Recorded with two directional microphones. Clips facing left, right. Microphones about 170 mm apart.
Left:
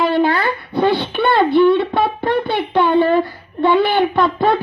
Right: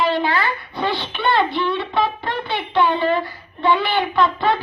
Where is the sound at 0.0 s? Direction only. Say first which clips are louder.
Left 4 dB; 50° left (ahead or behind).